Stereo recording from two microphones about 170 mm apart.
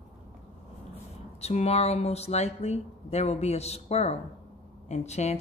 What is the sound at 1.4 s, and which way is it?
Speech, 40° left (ahead or behind).